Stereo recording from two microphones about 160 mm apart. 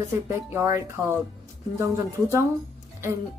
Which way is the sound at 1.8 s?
20° right (ahead or behind).